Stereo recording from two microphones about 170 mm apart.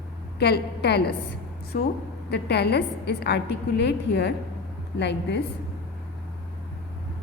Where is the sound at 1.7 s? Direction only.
60° left (ahead or behind).